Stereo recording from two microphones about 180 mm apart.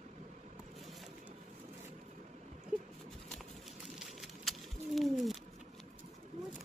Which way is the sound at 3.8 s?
Centre (ahead or behind).